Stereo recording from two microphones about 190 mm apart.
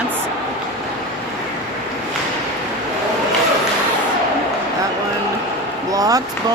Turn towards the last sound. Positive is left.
turn(degrees=-20)  # may be behind; listen again after turning